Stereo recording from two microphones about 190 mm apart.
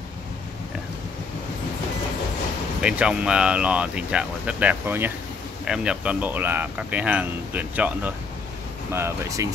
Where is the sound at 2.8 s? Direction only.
5° right (ahead or behind).